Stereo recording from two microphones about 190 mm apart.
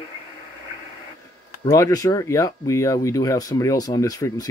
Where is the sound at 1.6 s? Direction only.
20° left (ahead or behind).